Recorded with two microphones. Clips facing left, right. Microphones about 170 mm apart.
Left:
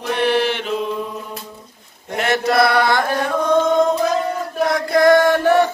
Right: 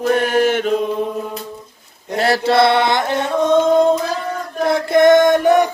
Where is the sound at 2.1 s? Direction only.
35° right (ahead or behind).